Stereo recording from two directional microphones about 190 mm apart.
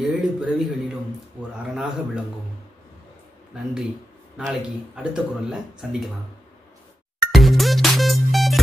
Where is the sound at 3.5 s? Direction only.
5° right (ahead or behind).